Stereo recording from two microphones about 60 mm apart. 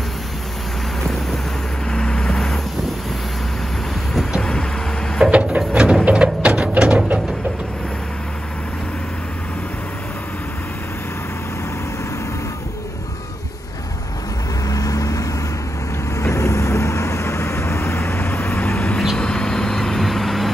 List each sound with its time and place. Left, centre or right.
1.9 s vehicle: centre
4.4 s vehicle: centre
5.2 s printer: right
5.7 s a sound: centre
6.0 s music: right
14.7 s vehicle: left
16.2 s vehicle: left; by 20.4 s centre